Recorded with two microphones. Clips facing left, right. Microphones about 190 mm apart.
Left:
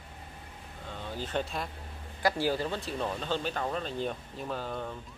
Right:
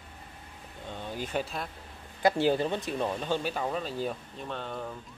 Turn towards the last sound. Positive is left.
turn(degrees=0)  # may be behind; listen again after turning